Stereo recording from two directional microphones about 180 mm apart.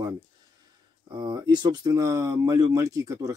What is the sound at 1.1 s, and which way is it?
Speech, 25° right (ahead or behind).